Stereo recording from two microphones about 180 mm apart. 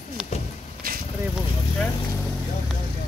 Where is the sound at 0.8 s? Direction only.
55° right (ahead or behind).